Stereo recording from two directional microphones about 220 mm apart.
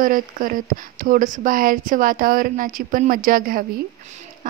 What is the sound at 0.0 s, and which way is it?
A woman's voice, 40° right (ahead or behind).